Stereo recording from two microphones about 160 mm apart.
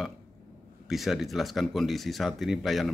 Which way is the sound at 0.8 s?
Centre (ahead or behind).